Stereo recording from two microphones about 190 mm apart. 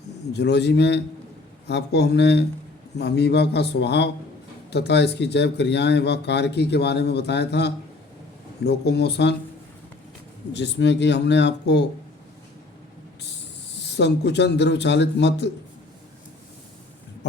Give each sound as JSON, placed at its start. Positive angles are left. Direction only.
{"t": 0.3, "sound": "speech", "side_deg": 65}
{"t": 10.5, "sound": "a man's voice", "side_deg": 70}
{"t": 13.9, "sound": "speech", "side_deg": 65}